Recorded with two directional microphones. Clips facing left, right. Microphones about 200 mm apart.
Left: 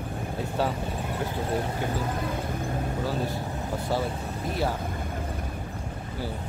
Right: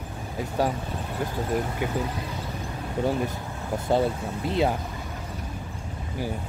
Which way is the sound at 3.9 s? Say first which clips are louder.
Right 6 dB; 20° right (ahead or behind).